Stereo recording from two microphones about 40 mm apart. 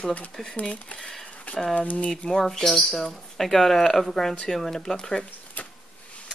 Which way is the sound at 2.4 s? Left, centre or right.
Centre.